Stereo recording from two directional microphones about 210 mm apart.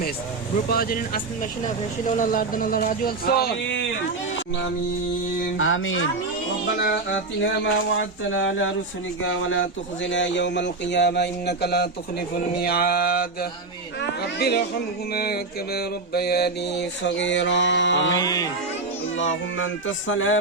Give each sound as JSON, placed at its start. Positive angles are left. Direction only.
{"t": 0.7, "sound": "speech", "side_deg": 45}
{"t": 5.5, "sound": "speech", "side_deg": 70}
{"t": 6.8, "sound": "mantra", "side_deg": 55}
{"t": 12.5, "sound": "speech", "side_deg": 45}
{"t": 15.1, "sound": "mantra", "side_deg": 45}
{"t": 18.2, "sound": "music", "side_deg": 15}
{"t": 19.1, "sound": "speech", "side_deg": 65}